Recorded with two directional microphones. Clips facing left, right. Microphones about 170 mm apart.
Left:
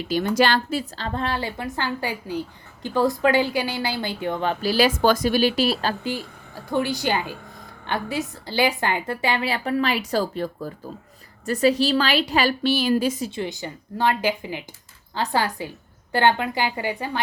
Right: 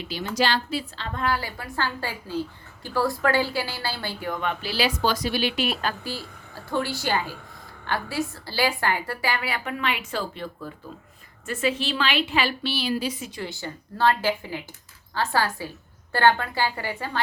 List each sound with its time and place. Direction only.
0.1 s a woman's voice: 55° left (ahead or behind); by 6.1 s 30° left (ahead or behind)
6.7 s a woman's voice: 15° left (ahead or behind); by 13.3 s 45° left (ahead or behind)
13.3 s speech: 20° left (ahead or behind)